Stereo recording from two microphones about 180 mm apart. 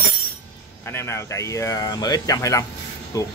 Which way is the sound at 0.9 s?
15° left (ahead or behind).